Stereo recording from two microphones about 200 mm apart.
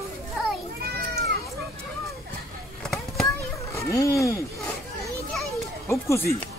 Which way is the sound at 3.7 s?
15° left (ahead or behind).